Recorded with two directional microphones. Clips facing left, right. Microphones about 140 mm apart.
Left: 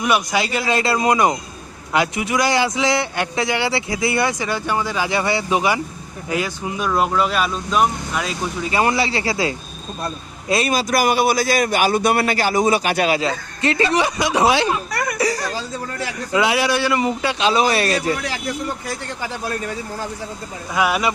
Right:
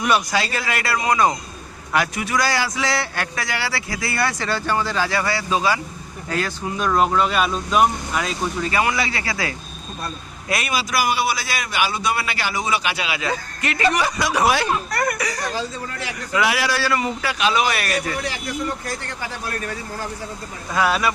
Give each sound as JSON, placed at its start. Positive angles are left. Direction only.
{"t": 0.0, "sound": "a man's voice", "side_deg": 15}
{"t": 8.8, "sound": "a man's voice", "side_deg": 30}
{"t": 10.7, "sound": "a man's voice", "side_deg": 45}
{"t": 13.2, "sound": "a man's voice", "side_deg": 30}
{"t": 14.8, "sound": "a sound", "side_deg": 0}
{"t": 16.3, "sound": "a man's voice", "side_deg": 25}
{"t": 20.7, "sound": "speech", "side_deg": 15}